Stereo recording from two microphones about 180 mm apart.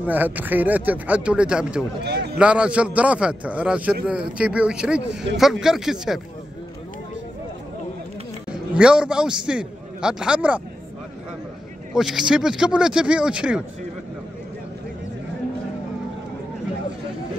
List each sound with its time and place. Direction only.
0.0 s speech: 10° right (ahead or behind)
2.0 s a man's voice: 65° right (ahead or behind)
2.3 s speech: 5° right (ahead or behind)
8.5 s a man's voice: 5° right (ahead or behind)
11.9 s speech: centre (ahead or behind)